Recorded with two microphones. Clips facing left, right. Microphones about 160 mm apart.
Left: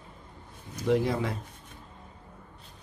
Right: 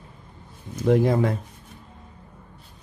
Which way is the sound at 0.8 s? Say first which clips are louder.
Right 6 dB; 50° right (ahead or behind).